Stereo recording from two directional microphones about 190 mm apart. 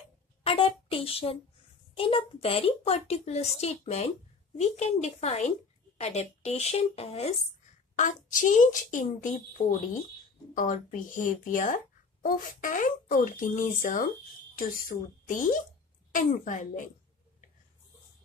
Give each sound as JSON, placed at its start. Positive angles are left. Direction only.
{"t": 0.4, "sound": "speech", "side_deg": 30}